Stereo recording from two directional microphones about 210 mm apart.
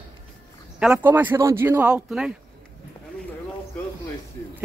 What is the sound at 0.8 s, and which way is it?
Speech, 5° right (ahead or behind).